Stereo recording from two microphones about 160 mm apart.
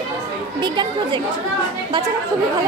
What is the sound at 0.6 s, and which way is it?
Speech, 30° right (ahead or behind).